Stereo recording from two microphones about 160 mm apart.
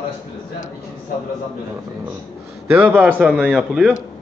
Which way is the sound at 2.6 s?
10° right (ahead or behind).